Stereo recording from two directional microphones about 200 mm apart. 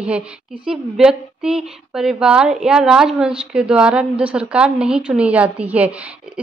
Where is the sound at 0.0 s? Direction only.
5° right (ahead or behind).